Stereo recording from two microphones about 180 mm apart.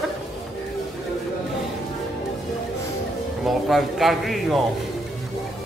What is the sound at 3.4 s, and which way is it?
A man's voice, centre (ahead or behind).